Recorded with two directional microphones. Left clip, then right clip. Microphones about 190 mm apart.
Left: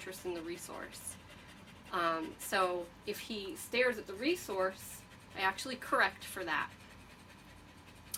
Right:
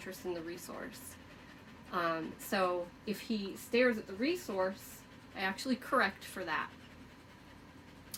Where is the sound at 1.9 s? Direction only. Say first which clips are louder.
Left 1 dB; 15° right (ahead or behind).